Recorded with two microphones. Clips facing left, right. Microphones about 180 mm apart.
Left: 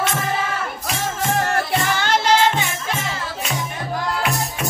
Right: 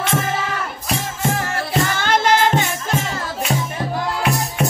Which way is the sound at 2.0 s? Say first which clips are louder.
Right 1 dB; 50° right (ahead or behind).